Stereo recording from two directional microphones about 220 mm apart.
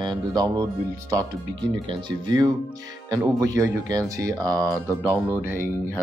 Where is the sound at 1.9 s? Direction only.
20° right (ahead or behind).